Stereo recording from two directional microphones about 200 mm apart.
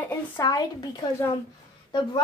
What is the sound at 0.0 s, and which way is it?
A woman's voice, 20° left (ahead or behind).